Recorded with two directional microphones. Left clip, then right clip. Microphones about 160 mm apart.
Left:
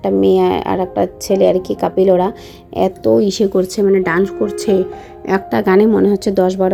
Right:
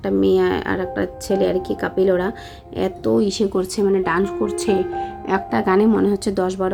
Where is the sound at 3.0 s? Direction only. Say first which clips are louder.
Left 5 dB; 20° left (ahead or behind).